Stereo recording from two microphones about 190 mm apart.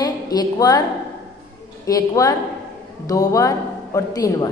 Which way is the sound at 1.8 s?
20° left (ahead or behind).